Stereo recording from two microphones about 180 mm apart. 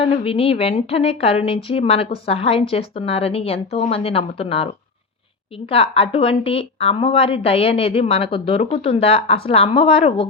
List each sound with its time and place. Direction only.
0.0 s a woman's voice: 30° left (ahead or behind)
5.7 s a woman's voice: 30° left (ahead or behind)